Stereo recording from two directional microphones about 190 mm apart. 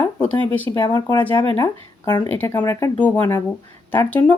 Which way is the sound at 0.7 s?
20° left (ahead or behind).